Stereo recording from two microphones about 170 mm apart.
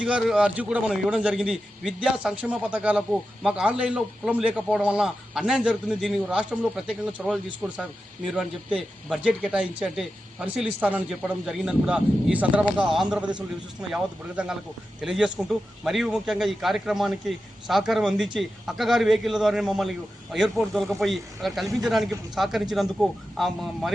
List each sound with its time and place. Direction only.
0.0 s a man's voice: 5° right (ahead or behind)